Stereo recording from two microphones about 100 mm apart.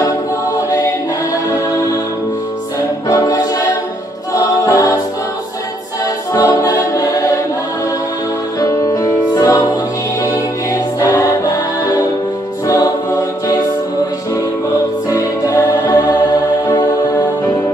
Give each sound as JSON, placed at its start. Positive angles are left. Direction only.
{"t": 3.1, "sound": "music", "side_deg": 35}
{"t": 4.3, "sound": "a capella", "side_deg": 35}
{"t": 6.3, "sound": "choir", "side_deg": 40}
{"t": 8.5, "sound": "music", "side_deg": 35}
{"t": 12.6, "sound": "choir", "side_deg": 35}
{"t": 14.3, "sound": "music", "side_deg": 35}